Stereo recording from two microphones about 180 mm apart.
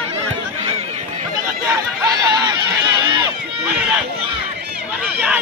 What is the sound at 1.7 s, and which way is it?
Chatter, 20° right (ahead or behind).